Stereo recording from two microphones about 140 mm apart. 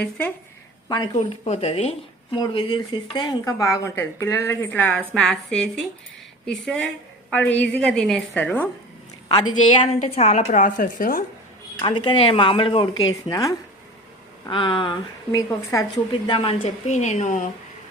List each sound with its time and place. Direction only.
0.0 s a woman's voice: 10° left (ahead or behind)
0.9 s speech: 30° left (ahead or behind)
1.3 s a woman's voice: 45° left (ahead or behind)
2.3 s a woman's voice: 35° left (ahead or behind); by 8.7 s 10° left (ahead or behind)
9.3 s speech: 35° left (ahead or behind)
10.0 s a woman's voice: 55° left (ahead or behind); by 11.2 s 75° left (ahead or behind)
11.8 s speech: 35° left (ahead or behind)
14.5 s speech: 35° left (ahead or behind)
15.4 s a woman's voice: 25° left (ahead or behind); by 17.5 s 55° left (ahead or behind)